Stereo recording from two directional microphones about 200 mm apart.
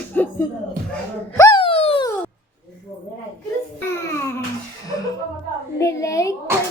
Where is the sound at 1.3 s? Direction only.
20° left (ahead or behind).